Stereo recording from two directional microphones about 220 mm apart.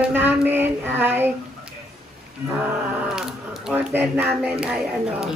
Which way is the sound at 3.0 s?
Centre (ahead or behind).